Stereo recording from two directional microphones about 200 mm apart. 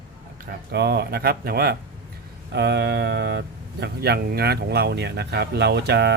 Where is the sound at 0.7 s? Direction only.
55° right (ahead or behind).